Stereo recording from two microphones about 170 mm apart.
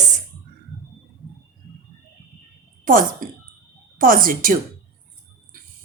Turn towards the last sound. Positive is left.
turn(degrees=-55)  # may be behind; listen again after turning